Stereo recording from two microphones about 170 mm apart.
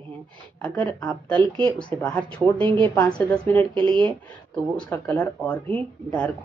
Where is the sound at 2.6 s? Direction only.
30° right (ahead or behind).